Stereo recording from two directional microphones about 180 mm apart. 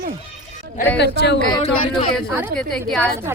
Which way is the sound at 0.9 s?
70° left (ahead or behind).